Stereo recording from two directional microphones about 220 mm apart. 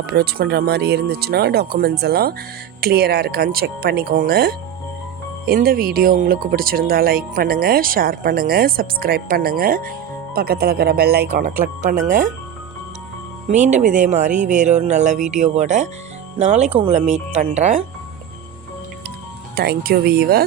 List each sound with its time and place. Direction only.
0.1 s speech: 45° right (ahead or behind)
13.7 s speech: 35° right (ahead or behind)
19.5 s speech: 45° right (ahead or behind)